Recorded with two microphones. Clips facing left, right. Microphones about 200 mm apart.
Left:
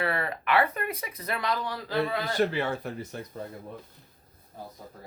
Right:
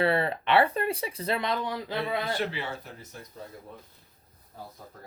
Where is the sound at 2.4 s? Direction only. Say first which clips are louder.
Left 6 dB; 50° left (ahead or behind); by 3.4 s 65° left (ahead or behind).